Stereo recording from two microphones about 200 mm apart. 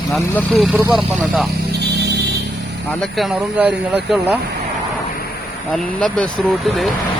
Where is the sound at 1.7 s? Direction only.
60° right (ahead or behind).